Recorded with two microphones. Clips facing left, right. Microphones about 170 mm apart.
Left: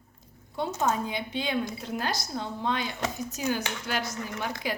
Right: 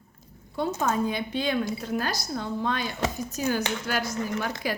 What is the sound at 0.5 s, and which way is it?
A woman's voice, 20° left (ahead or behind).